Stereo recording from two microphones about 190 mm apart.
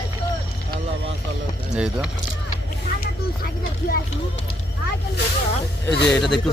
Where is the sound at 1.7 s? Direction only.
5° right (ahead or behind).